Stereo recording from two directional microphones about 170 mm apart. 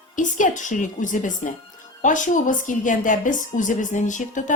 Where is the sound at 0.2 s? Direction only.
50° left (ahead or behind).